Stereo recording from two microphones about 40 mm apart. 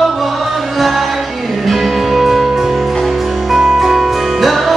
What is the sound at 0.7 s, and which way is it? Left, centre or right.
Music, centre.